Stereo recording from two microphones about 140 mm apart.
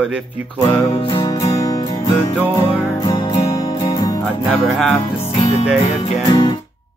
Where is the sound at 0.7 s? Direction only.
40° left (ahead or behind).